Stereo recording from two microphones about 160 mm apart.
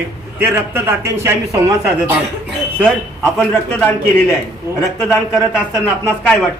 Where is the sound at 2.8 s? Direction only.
5° left (ahead or behind).